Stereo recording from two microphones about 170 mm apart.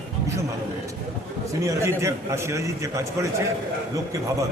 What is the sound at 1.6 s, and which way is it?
A man's voice, 15° right (ahead or behind).